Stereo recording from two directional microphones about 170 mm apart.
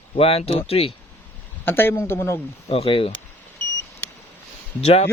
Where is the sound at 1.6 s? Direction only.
15° left (ahead or behind).